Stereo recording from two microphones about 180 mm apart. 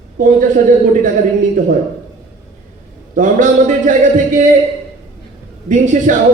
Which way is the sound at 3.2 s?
45° right (ahead or behind).